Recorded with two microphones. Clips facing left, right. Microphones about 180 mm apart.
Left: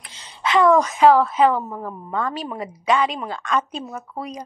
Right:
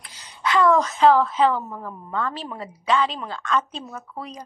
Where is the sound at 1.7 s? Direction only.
20° left (ahead or behind).